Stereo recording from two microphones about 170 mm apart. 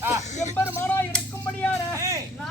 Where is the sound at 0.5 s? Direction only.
10° left (ahead or behind).